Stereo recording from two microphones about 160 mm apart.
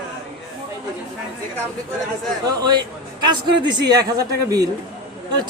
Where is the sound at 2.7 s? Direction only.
25° right (ahead or behind).